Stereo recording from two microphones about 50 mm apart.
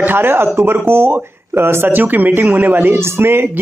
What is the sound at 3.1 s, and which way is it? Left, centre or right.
Speech, right.